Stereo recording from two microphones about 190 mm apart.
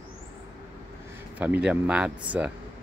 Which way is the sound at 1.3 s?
10° right (ahead or behind).